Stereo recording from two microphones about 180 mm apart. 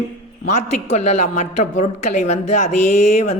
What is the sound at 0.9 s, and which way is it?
Speech, 40° left (ahead or behind).